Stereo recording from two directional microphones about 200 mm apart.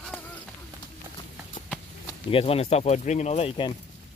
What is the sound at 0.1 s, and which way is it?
Run, 10° left (ahead or behind).